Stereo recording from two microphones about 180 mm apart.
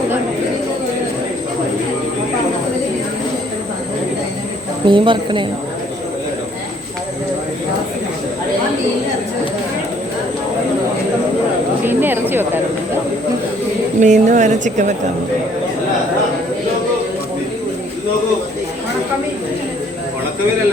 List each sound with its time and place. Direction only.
4.9 s speech: 25° right (ahead or behind)
11.9 s speech: 10° right (ahead or behind)
14.0 s speech: 40° right (ahead or behind)